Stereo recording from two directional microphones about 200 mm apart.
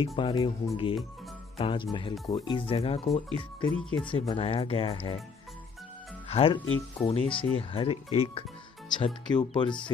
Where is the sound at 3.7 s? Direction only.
5° left (ahead or behind).